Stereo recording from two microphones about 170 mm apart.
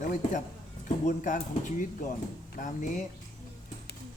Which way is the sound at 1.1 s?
50° left (ahead or behind).